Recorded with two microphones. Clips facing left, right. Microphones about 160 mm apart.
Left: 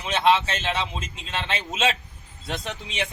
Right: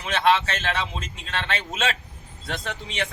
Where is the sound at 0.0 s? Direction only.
20° left (ahead or behind).